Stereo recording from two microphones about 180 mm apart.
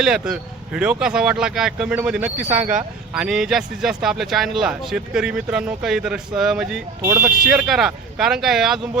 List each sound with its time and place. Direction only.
0.0 s speech: 5° right (ahead or behind)
2.4 s speech: 45° right (ahead or behind)
3.2 s speech: 5° right (ahead or behind)